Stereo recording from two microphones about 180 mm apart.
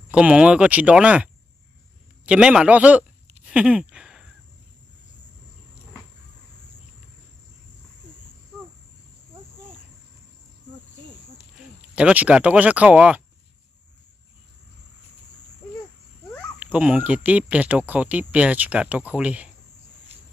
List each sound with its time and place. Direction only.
0.1 s speech: 5° right (ahead or behind)
2.2 s a sound: 5° right (ahead or behind)
11.9 s speech: 5° right (ahead or behind)
16.5 s speech: 10° right (ahead or behind)